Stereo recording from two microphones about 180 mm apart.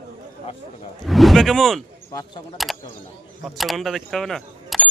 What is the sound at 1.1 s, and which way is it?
Speech, centre (ahead or behind).